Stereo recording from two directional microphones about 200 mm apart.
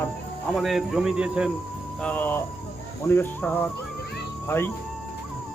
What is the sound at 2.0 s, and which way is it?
Speech, 10° left (ahead or behind).